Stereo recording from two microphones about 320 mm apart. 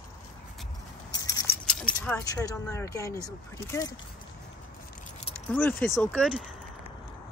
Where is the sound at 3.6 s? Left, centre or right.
Centre.